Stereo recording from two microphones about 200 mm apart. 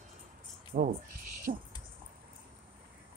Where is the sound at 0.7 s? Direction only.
45° right (ahead or behind).